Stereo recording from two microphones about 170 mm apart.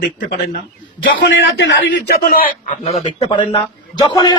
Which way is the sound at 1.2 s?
90° left.